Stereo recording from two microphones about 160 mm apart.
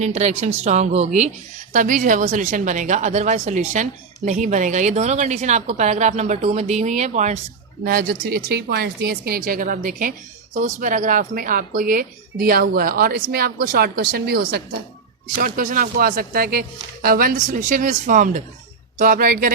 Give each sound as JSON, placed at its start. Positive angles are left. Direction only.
{"t": 0.0, "sound": "a woman's voice", "side_deg": -45}
{"t": 1.7, "sound": "a woman's voice", "side_deg": -55}
{"t": 7.9, "sound": "speech", "side_deg": -65}
{"t": 8.4, "sound": "a woman's voice", "side_deg": -85}
{"t": 15.4, "sound": "a woman's voice", "side_deg": -60}